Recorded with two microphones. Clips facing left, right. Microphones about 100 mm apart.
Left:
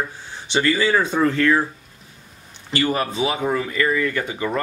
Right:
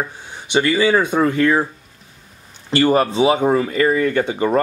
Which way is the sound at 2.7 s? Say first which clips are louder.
Right 7 dB; 35° right (ahead or behind).